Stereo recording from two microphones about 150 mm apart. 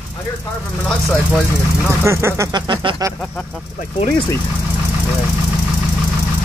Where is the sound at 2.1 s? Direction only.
20° right (ahead or behind).